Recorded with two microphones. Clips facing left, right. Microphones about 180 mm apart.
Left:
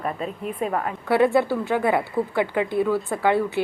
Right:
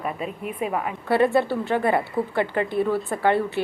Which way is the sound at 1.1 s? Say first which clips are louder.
Left 1 dB; 10° left (ahead or behind).